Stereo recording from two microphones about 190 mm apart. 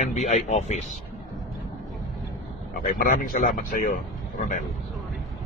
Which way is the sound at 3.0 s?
45° left (ahead or behind).